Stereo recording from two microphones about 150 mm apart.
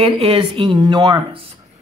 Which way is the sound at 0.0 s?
35° right (ahead or behind).